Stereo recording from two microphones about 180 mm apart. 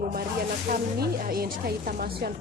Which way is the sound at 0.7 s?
55° right (ahead or behind).